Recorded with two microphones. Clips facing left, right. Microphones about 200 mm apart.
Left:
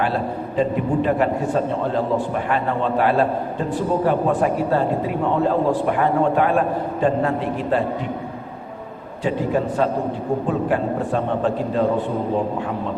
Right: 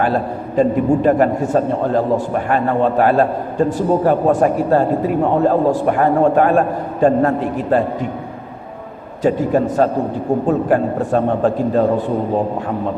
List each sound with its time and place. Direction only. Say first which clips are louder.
0.0 s a man's voice: right 4 dB; 45° right (ahead or behind)
9.2 s a man's voice: right 6 dB; 45° right (ahead or behind)